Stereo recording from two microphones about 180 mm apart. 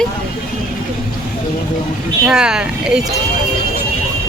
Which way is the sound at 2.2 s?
5° right (ahead or behind).